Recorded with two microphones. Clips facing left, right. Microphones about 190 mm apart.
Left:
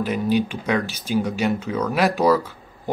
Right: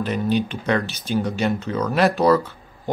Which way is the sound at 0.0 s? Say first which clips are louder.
Left 1 dB; 10° left (ahead or behind).